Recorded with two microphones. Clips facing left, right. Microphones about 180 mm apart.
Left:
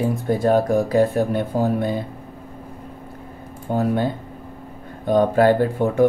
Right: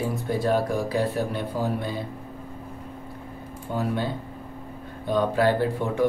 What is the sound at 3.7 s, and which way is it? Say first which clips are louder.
Speech: left 6 dB; 50° left (ahead or behind).